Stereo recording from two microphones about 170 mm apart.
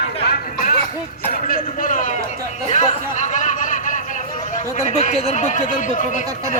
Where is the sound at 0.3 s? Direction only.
60° left (ahead or behind).